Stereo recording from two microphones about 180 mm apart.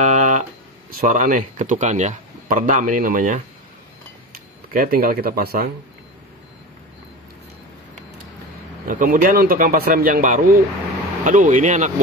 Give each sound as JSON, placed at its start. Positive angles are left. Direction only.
{"t": 0.0, "sound": "music", "side_deg": -40}
{"t": 1.0, "sound": "speech", "side_deg": -45}
{"t": 4.7, "sound": "speech", "side_deg": -55}
{"t": 8.8, "sound": "speech", "side_deg": -50}